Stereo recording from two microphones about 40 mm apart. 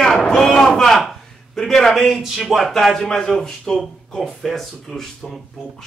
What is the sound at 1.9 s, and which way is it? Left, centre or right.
Speech, centre.